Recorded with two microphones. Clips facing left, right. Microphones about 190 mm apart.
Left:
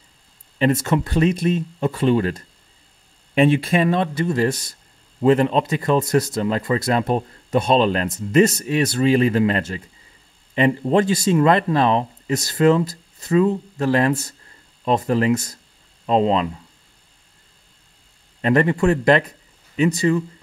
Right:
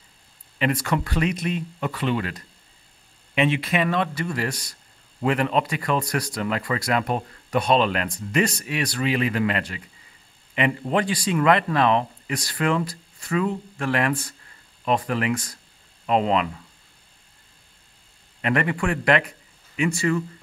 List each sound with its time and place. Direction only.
0.6 s speech: 25° left (ahead or behind); by 11.3 s 40° left (ahead or behind)
11.3 s speech: 30° left (ahead or behind)
18.4 s a man's voice: 30° left (ahead or behind)
19.9 s speech: 20° left (ahead or behind)